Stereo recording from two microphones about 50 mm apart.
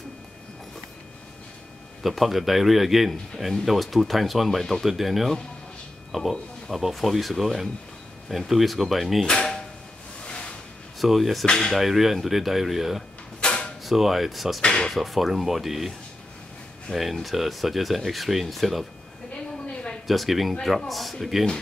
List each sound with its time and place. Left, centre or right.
2.0 s speech: centre
9.2 s a sound: centre
11.0 s speech: centre
11.4 s speech: centre
11.7 s speech: centre
13.4 s a sound: centre
13.8 s speech: centre
14.6 s speech: centre
14.9 s speech: centre
16.9 s speech: centre
19.3 s a sound: left
20.1 s speech: centre